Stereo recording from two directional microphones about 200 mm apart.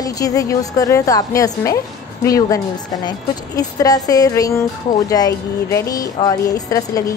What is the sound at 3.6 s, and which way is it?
A woman's voice, 20° left (ahead or behind).